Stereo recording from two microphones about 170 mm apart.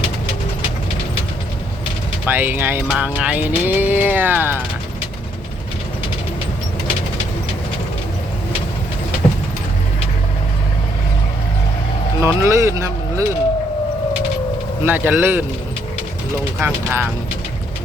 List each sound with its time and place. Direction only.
2.2 s music: 10° right (ahead or behind)
12.2 s speech: 15° right (ahead or behind)
14.8 s music: 10° right (ahead or behind)
16.6 s music: 10° right (ahead or behind)